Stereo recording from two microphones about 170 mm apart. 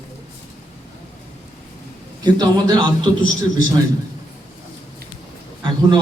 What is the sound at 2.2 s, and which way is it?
Speech, 25° right (ahead or behind).